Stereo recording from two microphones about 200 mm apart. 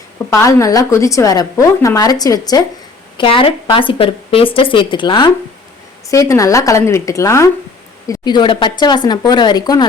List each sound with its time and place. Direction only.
0.3 s a woman's voice: 15° left (ahead or behind)